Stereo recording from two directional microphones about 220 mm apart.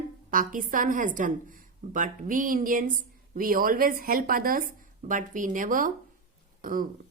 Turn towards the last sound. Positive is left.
turn(degrees=-40)  # may be behind; listen again after turning